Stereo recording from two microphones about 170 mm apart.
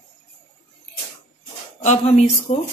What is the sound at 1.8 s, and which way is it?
Speech, 40° left (ahead or behind).